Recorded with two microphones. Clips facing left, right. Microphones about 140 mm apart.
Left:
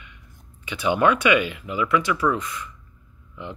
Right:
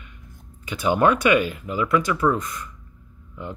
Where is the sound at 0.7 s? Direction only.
40° right (ahead or behind).